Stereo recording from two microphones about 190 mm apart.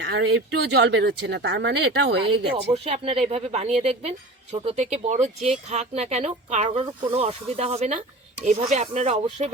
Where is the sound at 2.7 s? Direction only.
35° right (ahead or behind).